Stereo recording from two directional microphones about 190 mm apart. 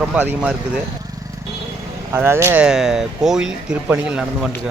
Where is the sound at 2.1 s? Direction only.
15° right (ahead or behind).